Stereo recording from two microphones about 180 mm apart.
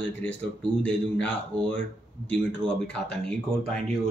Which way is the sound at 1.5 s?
5° left (ahead or behind).